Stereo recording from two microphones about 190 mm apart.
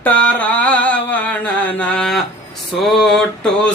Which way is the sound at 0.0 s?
10° left (ahead or behind).